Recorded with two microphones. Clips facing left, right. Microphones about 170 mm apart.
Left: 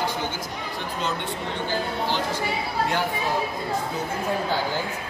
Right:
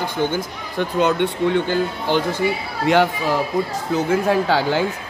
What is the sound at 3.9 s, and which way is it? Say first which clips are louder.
Speech: right 9 dB; 90° right.